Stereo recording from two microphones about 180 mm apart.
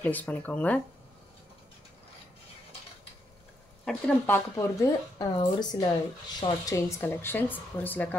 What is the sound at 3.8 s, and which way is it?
A woman's voice, 10° left (ahead or behind).